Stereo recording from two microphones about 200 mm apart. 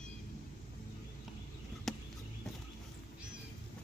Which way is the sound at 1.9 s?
Centre (ahead or behind).